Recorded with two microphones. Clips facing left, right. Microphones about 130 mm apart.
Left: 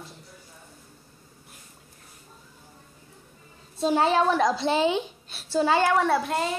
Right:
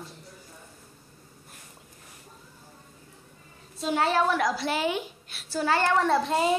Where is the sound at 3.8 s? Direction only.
30° left (ahead or behind).